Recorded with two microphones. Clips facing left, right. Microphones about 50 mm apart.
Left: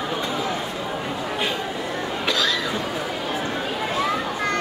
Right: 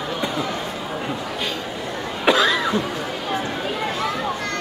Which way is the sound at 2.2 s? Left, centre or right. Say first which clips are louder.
Right 7 dB; right.